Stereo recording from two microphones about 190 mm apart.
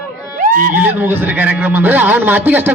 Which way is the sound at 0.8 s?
10° right (ahead or behind).